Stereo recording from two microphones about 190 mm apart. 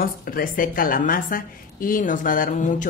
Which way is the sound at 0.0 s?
45° left (ahead or behind).